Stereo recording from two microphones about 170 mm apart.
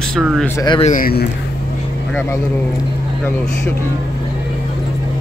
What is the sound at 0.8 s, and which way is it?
Speech, 50° left (ahead or behind).